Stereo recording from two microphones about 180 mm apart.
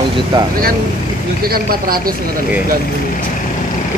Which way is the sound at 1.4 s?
55° right (ahead or behind).